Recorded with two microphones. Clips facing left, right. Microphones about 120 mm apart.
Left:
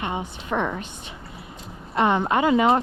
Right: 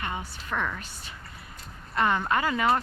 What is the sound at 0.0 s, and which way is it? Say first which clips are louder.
Speech: left 5 dB; 25° left (ahead or behind).